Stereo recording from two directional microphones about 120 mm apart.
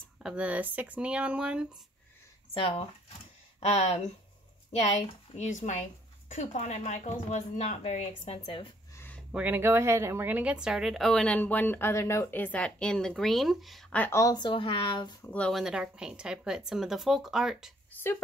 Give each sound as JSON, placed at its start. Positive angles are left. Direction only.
{"t": 0.2, "sound": "speech", "side_deg": -10}
{"t": 2.5, "sound": "speech", "side_deg": 50}
{"t": 3.6, "sound": "speech", "side_deg": 60}
{"t": 6.2, "sound": "speech", "side_deg": 90}
{"t": 8.9, "sound": "a sound", "side_deg": 15}
{"t": 9.3, "sound": "speech", "side_deg": -15}
{"t": 13.9, "sound": "speech", "side_deg": 15}
{"t": 14.2, "sound": "speech", "side_deg": 35}
{"t": 15.2, "sound": "speech", "side_deg": 10}
{"t": 15.5, "sound": "speech", "side_deg": -5}